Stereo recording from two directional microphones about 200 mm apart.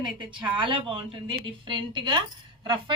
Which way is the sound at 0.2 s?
25° right (ahead or behind).